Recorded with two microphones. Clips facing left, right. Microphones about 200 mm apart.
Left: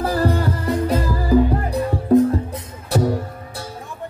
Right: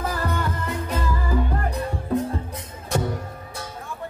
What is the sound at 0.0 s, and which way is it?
Music, 35° left (ahead or behind).